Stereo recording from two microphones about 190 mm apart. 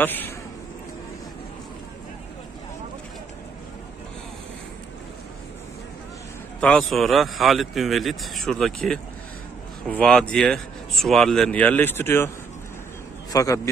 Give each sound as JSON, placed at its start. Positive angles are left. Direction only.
{"t": 0.0, "sound": "a man's voice", "side_deg": 10}
{"t": 6.6, "sound": "speech", "side_deg": 5}
{"t": 13.3, "sound": "a man's voice", "side_deg": 15}